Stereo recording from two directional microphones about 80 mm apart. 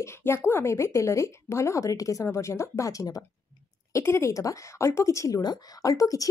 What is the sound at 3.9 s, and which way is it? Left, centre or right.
A woman's voice, left.